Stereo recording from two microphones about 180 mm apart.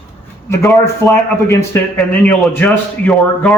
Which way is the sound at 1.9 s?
5° left (ahead or behind).